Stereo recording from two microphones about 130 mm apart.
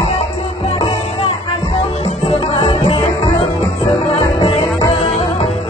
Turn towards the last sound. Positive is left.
turn(degrees=50)  # may be behind; listen again after turning